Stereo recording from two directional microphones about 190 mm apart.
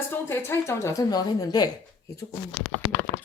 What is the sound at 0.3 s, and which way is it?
A woman's voice, 15° left (ahead or behind).